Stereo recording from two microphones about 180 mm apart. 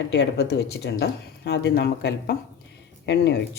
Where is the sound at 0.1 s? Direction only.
70° left (ahead or behind).